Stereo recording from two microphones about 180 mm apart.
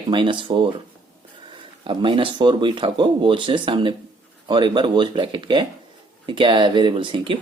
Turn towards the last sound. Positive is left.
turn(degrees=-25)  # may be behind; listen again after turning